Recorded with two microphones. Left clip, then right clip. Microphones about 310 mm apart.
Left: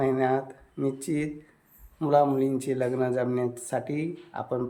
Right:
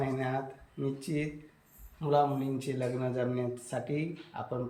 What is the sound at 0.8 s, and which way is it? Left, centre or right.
Speech, centre.